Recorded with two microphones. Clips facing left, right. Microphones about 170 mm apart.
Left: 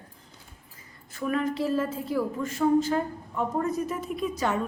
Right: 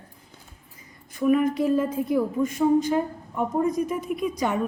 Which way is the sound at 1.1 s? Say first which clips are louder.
Right 7 dB; 15° right (ahead or behind).